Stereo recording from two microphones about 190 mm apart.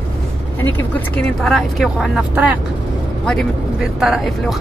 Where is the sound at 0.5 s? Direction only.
10° left (ahead or behind).